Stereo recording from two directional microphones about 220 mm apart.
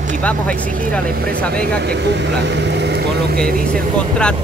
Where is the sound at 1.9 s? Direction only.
50° right (ahead or behind).